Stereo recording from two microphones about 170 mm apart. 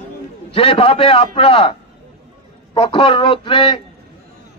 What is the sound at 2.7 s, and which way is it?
A man's voice, 30° left (ahead or behind).